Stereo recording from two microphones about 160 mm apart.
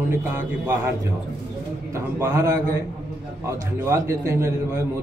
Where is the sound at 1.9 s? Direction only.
20° right (ahead or behind).